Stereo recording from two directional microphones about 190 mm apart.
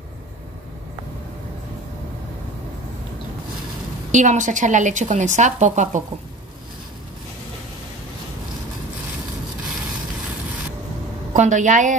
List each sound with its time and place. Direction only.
4.1 s a woman's voice: 40° right (ahead or behind)
11.3 s a woman's voice: 40° right (ahead or behind)